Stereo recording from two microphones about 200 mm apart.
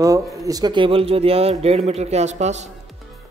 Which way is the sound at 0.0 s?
15° right (ahead or behind).